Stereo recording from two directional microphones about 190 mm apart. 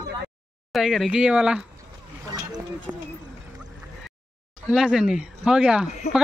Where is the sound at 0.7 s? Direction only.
Centre (ahead or behind).